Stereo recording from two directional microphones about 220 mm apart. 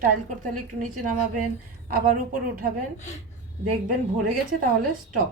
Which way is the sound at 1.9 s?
40° right (ahead or behind).